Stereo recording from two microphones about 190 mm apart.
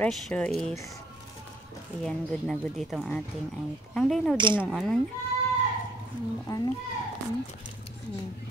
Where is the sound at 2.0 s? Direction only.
5° left (ahead or behind).